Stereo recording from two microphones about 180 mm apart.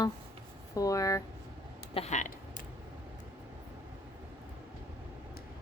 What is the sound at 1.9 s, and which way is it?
Speech, 35° left (ahead or behind).